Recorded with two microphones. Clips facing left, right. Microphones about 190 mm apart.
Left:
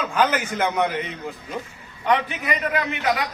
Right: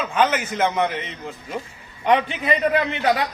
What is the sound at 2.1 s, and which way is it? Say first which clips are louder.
A man's voice: right 3 dB; 25° right (ahead or behind).